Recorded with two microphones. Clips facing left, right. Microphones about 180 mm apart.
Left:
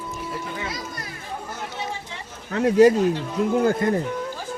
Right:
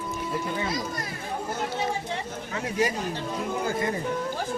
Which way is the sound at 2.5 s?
65° left (ahead or behind).